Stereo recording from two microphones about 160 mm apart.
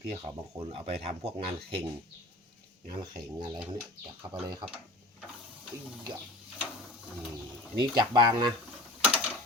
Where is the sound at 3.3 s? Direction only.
30° right (ahead or behind).